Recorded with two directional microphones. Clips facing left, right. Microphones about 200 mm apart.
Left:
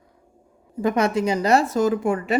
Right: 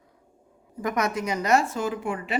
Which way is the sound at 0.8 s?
30° left (ahead or behind).